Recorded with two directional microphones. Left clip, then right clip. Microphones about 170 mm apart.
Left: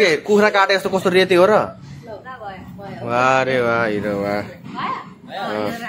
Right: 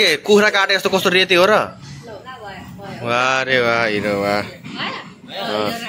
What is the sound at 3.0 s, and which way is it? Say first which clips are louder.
Speech: left 1 dB; centre (ahead or behind).